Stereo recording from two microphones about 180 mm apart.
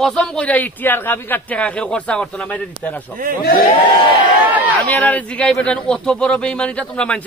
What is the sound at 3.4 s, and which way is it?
Speech, 60° left (ahead or behind).